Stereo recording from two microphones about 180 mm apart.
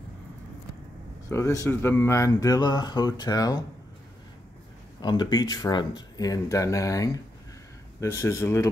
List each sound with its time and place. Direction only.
1.3 s speech: 15° left (ahead or behind)
5.0 s speech: 25° left (ahead or behind)